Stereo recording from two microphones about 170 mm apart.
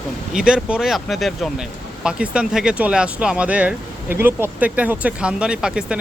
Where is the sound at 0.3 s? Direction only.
5° right (ahead or behind).